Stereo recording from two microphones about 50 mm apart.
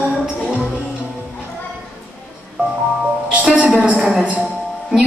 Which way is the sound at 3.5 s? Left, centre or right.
Right.